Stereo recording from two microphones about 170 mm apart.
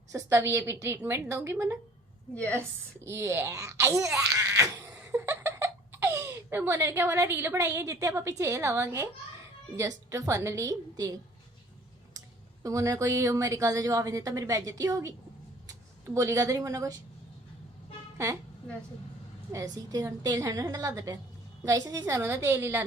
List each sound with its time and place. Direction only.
0.1 s a woman's voice: 15° right (ahead or behind)
2.3 s a woman's voice: 10° left (ahead or behind)
3.0 s a woman's voice: 15° right (ahead or behind)
4.2 s giggle: 15° right (ahead or behind)
9.7 s a woman's voice: 20° right (ahead or behind)
12.6 s a woman's voice: 20° right (ahead or behind)
19.5 s a woman's voice: 20° right (ahead or behind)